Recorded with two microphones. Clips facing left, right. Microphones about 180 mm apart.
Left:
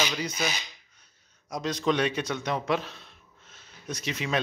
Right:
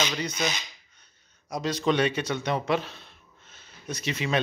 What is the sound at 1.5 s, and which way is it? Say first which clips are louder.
Speech: right 1 dB; centre (ahead or behind).